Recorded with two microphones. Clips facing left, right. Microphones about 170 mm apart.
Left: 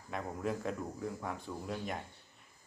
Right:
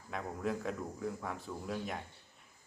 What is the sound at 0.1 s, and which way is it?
Speech, centre (ahead or behind).